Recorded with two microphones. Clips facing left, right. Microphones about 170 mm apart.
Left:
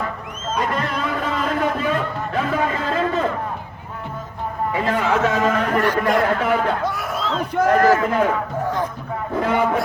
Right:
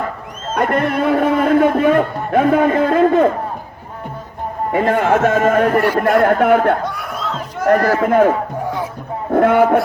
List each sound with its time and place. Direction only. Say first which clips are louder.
0.5 s a man's voice: right 7 dB; 60° right (ahead or behind)
4.7 s a man's voice: right 6 dB; 55° right (ahead or behind)
6.8 s a sound: even; centre (ahead or behind)
7.6 s a man's voice: right 2 dB; 50° right (ahead or behind)
8.6 s music: even; 10° right (ahead or behind)
9.3 s a man's voice: right 8 dB; 55° right (ahead or behind)